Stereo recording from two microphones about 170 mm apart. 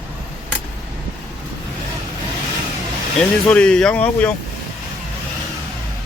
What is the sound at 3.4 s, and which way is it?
Speech, 5° left (ahead or behind).